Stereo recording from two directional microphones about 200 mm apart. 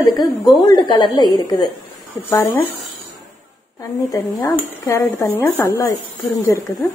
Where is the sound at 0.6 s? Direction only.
25° left (ahead or behind).